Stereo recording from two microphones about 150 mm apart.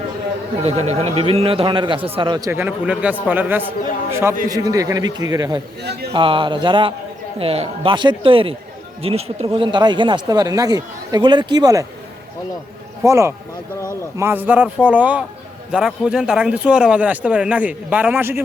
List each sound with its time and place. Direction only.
0.6 s a man's voice: 45° right (ahead or behind)
2.5 s a man's voice: 10° right (ahead or behind)
13.0 s speech: 20° right (ahead or behind)